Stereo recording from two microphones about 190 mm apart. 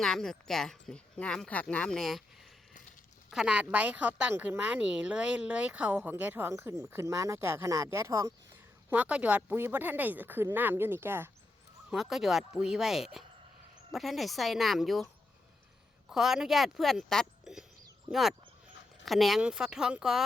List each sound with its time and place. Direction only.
0.0 s a woman's voice: centre (ahead or behind)
16.0 s speech: centre (ahead or behind)